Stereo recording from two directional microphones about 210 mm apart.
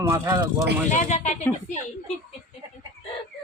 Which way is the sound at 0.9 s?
35° left (ahead or behind).